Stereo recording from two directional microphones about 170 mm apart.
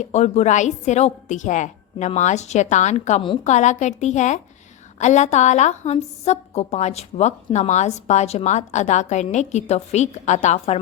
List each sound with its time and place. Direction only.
0.0 s a woman's voice: 40° left (ahead or behind)